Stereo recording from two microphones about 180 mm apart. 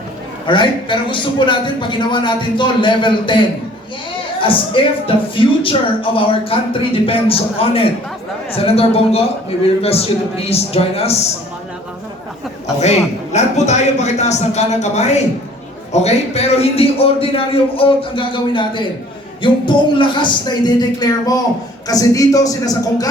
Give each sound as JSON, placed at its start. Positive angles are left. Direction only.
{"t": 0.4, "sound": "a man's voice", "side_deg": 25}
{"t": 12.8, "sound": "a man's voice", "side_deg": 40}